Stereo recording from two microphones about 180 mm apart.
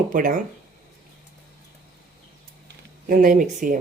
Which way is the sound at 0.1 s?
50° right (ahead or behind).